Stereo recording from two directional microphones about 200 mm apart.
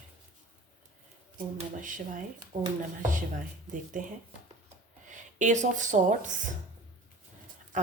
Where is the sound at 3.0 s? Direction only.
40° right (ahead or behind).